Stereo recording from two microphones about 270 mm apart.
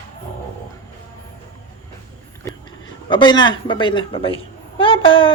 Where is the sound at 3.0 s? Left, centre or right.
Centre.